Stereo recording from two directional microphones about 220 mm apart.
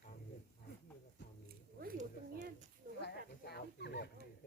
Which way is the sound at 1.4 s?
40° right (ahead or behind).